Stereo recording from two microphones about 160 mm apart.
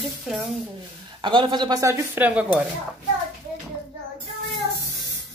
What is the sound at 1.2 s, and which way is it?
Speech, 30° right (ahead or behind).